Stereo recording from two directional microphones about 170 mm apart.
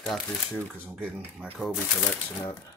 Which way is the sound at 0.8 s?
10° right (ahead or behind).